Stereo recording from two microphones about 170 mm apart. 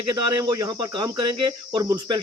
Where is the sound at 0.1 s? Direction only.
20° right (ahead or behind).